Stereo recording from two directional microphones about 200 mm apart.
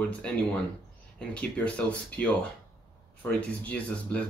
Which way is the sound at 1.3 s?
5° left (ahead or behind).